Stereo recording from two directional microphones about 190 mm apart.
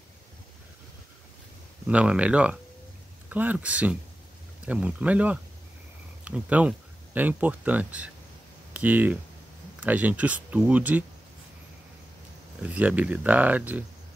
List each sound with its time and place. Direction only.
1.9 s speech: 5° right (ahead or behind)
12.6 s speech: 10° right (ahead or behind)